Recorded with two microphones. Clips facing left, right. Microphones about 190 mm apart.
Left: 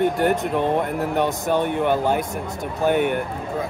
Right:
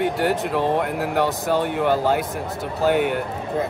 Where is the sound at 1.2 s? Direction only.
20° left (ahead or behind).